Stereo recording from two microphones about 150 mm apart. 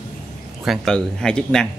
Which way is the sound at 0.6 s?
Centre (ahead or behind).